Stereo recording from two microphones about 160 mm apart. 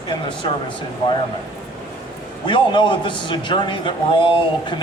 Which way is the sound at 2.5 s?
30° left (ahead or behind).